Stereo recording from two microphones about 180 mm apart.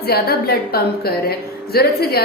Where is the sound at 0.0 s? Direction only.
60° left (ahead or behind).